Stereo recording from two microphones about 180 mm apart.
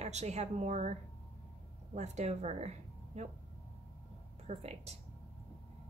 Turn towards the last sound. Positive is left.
turn(degrees=-35)  # may be behind; listen again after turning